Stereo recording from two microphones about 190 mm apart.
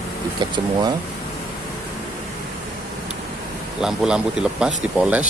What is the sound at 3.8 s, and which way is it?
Speech, 5° right (ahead or behind).